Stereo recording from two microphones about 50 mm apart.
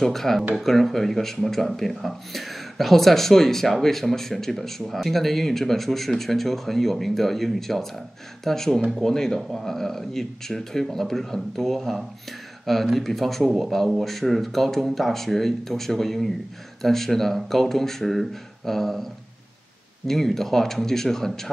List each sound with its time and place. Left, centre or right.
0.0 s speech: centre
20.1 s speech: centre